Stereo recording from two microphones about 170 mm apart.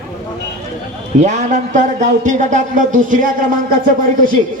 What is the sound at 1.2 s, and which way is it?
Speech, 45° right (ahead or behind).